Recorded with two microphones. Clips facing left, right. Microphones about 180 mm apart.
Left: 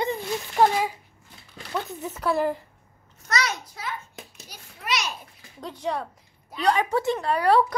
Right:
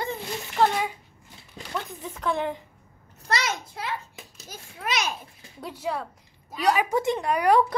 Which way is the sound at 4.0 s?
40° right (ahead or behind).